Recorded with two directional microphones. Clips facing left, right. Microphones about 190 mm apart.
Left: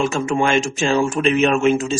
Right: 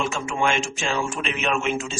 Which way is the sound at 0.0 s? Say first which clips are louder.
Left 6 dB; 40° left (ahead or behind).